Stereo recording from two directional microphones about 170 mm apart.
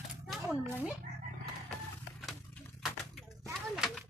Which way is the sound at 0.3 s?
5° right (ahead or behind).